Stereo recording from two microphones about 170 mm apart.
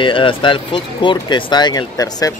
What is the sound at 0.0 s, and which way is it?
Speech, 30° left (ahead or behind).